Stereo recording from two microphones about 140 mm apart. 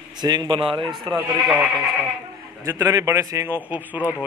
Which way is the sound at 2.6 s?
20° right (ahead or behind).